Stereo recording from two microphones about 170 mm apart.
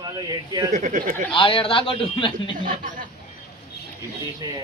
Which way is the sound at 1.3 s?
30° left (ahead or behind).